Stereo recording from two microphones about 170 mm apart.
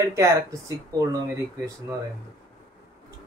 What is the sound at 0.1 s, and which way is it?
Speech, 15° right (ahead or behind).